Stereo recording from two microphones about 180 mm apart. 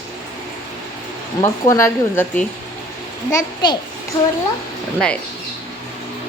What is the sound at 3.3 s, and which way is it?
Speech, 25° left (ahead or behind).